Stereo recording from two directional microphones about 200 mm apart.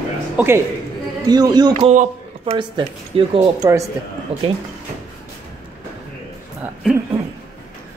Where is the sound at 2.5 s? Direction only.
25° right (ahead or behind).